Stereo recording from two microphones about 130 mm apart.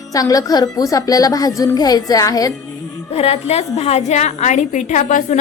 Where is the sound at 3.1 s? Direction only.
50° left (ahead or behind); by 5.4 s 65° left (ahead or behind).